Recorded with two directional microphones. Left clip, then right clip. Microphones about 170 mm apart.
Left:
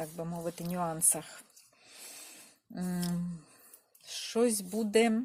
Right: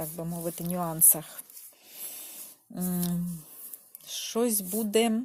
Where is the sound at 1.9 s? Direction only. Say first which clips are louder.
Right 3 dB; 35° right (ahead or behind).